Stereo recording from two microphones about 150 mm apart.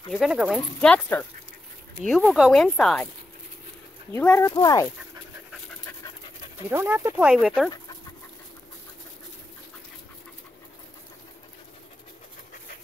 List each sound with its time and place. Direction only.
0.1 s speech: 5° right (ahead or behind)
0.7 s speech: 10° left (ahead or behind)
2.0 s speech: centre (ahead or behind)
4.1 s speech: 15° left (ahead or behind)
6.7 s speech: 15° right (ahead or behind)
7.2 s speech: 5° right (ahead or behind)